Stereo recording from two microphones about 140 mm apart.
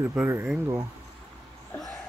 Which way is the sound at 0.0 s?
15° right (ahead or behind).